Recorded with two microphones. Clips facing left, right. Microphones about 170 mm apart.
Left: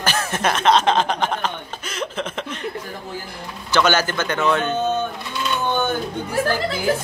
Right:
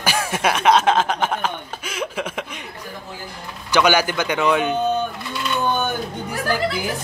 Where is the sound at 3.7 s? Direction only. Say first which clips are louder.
Right 1 dB; 10° right (ahead or behind).